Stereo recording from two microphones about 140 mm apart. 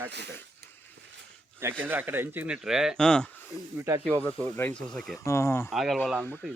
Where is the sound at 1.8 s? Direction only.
15° right (ahead or behind); by 4.8 s 10° left (ahead or behind).